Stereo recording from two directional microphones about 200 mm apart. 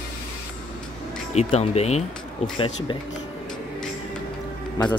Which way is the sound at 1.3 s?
30° left (ahead or behind).